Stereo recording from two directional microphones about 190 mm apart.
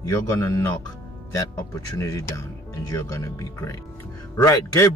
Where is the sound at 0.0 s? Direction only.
15° left (ahead or behind).